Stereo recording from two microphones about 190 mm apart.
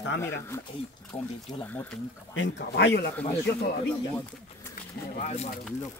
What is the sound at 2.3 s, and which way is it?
Speech, 75° left (ahead or behind).